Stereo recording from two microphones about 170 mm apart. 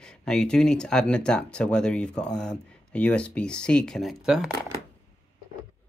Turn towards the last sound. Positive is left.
turn(degrees=-5)  # may be behind; listen again after turning